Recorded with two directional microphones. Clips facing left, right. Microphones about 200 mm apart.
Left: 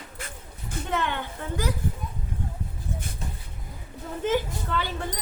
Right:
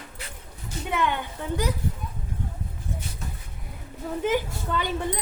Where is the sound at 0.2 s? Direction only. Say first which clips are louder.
Left 3 dB; 50° left (ahead or behind).